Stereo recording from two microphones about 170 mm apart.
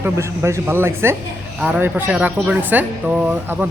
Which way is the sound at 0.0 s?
15° right (ahead or behind).